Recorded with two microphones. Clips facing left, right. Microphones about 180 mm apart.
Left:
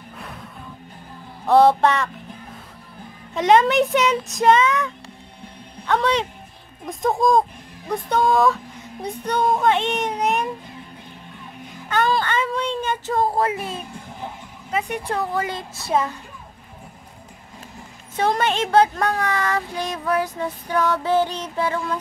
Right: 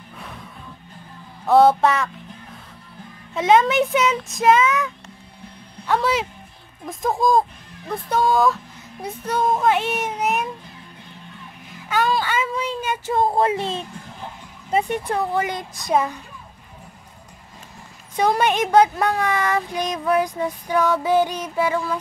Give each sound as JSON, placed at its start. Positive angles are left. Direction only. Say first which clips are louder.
{"t": 1.4, "sound": "speech", "louder": "even", "side_deg": 0}
{"t": 3.3, "sound": "speech", "louder": "left 1 dB", "side_deg": 0}
{"t": 11.9, "sound": "a child's voice", "louder": "even", "side_deg": 0}
{"t": 15.0, "sound": "a child's voice", "louder": "right 2 dB", "side_deg": -15}
{"t": 18.1, "sound": "a child's voice", "louder": "right 2 dB", "side_deg": -15}